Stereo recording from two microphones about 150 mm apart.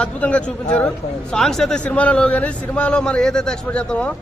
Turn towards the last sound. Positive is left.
turn(degrees=5)  # may be behind; listen again after turning